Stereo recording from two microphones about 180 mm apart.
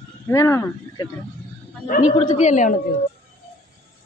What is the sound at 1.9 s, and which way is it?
Speech, 40° left (ahead or behind).